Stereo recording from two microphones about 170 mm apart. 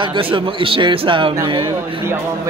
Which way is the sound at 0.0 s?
30° right (ahead or behind).